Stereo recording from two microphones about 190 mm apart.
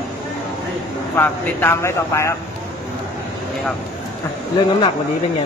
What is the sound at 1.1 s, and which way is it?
Speech, 10° left (ahead or behind).